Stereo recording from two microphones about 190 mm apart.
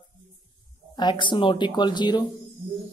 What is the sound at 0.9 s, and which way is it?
A woman's voice, 25° left (ahead or behind).